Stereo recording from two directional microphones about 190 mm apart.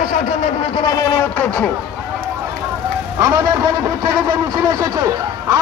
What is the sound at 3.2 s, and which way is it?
Speech, 20° right (ahead or behind).